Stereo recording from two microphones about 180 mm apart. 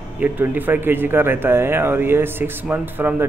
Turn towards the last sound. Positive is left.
turn(degrees=-10)  # may be behind; listen again after turning